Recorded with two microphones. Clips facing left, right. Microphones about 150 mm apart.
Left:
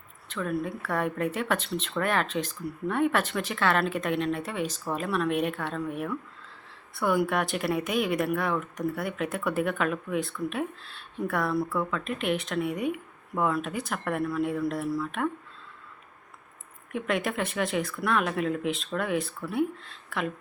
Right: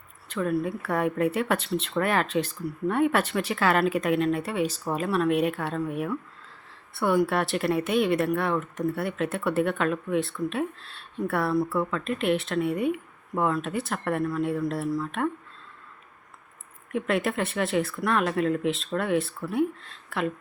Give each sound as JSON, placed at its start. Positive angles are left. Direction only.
{"t": 0.3, "sound": "a woman's voice", "side_deg": -5}
{"t": 16.9, "sound": "speech", "side_deg": 0}